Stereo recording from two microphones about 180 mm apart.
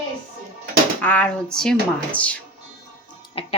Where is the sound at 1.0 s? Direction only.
10° left (ahead or behind).